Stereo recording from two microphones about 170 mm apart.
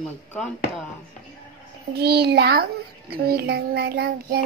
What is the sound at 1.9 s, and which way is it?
Child singing, 70° right (ahead or behind).